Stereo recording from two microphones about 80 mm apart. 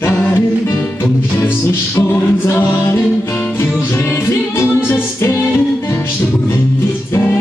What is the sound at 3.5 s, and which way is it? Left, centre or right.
Music, left.